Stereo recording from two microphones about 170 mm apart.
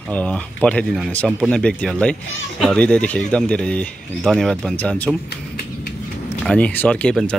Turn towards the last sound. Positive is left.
turn(degrees=5)  # may be behind; listen again after turning